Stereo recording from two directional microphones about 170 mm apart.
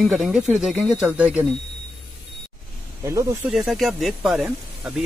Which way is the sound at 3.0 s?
15° right (ahead or behind).